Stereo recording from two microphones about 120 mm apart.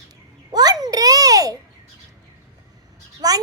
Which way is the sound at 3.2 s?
30° right (ahead or behind).